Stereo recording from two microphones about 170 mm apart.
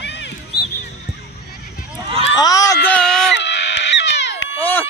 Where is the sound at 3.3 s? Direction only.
90° left.